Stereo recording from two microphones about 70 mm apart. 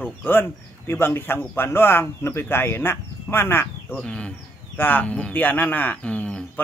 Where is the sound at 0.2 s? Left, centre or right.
Left.